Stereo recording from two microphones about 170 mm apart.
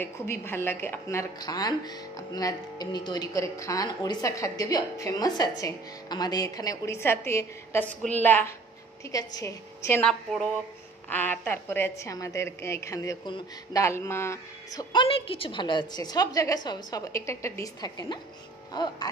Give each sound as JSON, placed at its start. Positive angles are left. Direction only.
{"t": 0.0, "sound": "a woman's voice", "side_deg": 15}
{"t": 10.0, "sound": "a woman's voice", "side_deg": 5}